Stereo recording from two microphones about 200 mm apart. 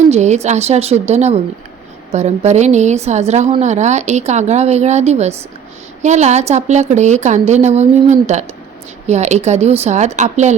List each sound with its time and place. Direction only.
0.1 s a woman's voice: 35° right (ahead or behind)